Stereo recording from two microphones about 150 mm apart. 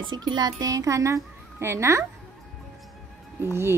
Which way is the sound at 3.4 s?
15° right (ahead or behind).